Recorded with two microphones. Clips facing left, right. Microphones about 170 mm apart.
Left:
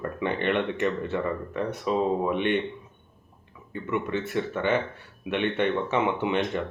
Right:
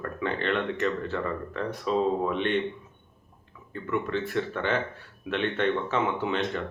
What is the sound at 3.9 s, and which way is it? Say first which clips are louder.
Speech: even; 5° left (ahead or behind).